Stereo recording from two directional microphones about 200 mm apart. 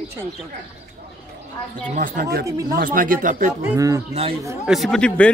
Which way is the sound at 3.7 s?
15° right (ahead or behind).